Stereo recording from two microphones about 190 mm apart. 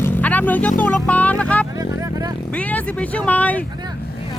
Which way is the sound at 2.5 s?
5° left (ahead or behind).